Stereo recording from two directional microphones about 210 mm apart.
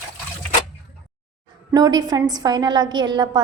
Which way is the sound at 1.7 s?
20° right (ahead or behind).